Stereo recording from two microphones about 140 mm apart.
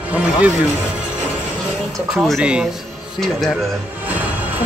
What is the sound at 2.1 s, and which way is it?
Speech, centre (ahead or behind).